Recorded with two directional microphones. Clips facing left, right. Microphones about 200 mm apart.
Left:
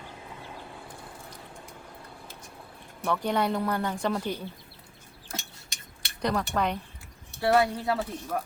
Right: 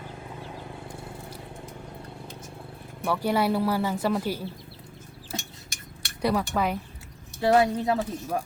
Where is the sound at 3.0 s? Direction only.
5° right (ahead or behind).